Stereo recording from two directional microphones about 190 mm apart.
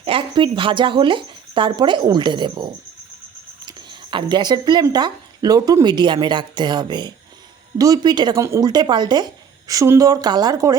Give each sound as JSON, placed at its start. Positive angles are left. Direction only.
{"t": 0.0, "sound": "speech", "side_deg": -30}
{"t": 3.7, "sound": "speech", "side_deg": -25}